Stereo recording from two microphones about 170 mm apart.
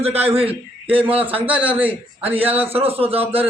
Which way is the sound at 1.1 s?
10° right (ahead or behind).